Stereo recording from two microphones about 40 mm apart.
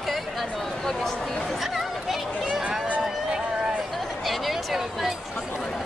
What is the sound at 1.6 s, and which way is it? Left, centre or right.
Chatter, centre.